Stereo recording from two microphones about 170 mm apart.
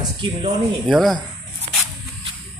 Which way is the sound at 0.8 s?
Centre (ahead or behind).